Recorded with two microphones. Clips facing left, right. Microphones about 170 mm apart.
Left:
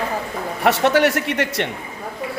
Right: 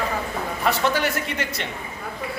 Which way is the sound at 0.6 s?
75° left (ahead or behind).